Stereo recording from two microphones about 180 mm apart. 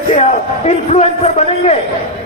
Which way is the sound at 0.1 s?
40° left (ahead or behind).